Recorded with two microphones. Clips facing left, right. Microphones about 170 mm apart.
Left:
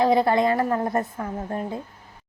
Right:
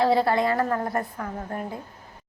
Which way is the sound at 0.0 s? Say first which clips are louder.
Left 2 dB; 20° left (ahead or behind).